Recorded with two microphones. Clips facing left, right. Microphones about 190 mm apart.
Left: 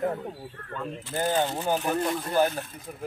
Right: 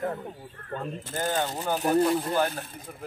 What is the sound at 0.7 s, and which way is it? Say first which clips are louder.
Speech: right 2 dB; 40° right (ahead or behind).